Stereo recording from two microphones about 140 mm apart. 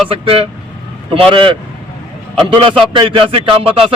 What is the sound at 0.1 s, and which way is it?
Speech, 45° right (ahead or behind).